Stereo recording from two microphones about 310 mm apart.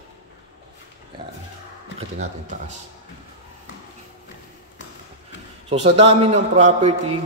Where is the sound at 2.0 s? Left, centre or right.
Right.